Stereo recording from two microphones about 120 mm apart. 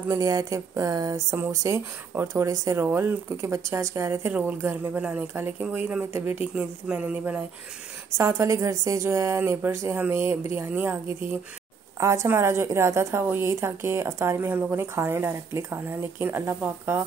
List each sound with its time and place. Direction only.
0.1 s a woman's voice: 30° right (ahead or behind); by 7.3 s 10° right (ahead or behind)
8.2 s a woman's voice: 25° right (ahead or behind)
12.0 s a woman's voice: 25° right (ahead or behind)